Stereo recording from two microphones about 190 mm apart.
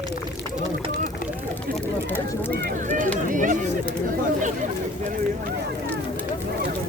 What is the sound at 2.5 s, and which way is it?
Run, 50° right (ahead or behind).